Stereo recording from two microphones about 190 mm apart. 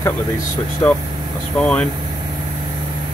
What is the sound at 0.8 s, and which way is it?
Speech, 15° left (ahead or behind).